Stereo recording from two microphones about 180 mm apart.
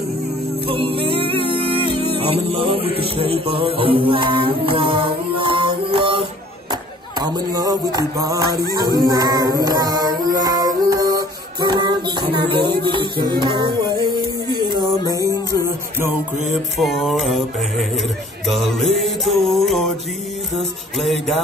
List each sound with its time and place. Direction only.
0.7 s music: 30° right (ahead or behind)
16.8 s music: centre (ahead or behind)